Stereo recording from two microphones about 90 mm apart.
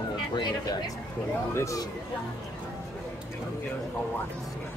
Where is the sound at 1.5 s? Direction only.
30° left (ahead or behind).